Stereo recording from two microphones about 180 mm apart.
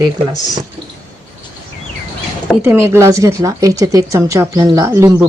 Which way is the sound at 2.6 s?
15° right (ahead or behind).